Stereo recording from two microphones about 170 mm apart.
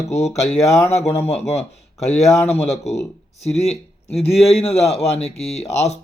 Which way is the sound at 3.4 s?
40° left (ahead or behind).